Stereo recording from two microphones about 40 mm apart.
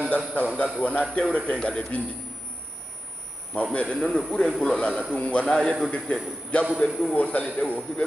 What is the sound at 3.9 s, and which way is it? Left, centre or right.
A man's voice, left.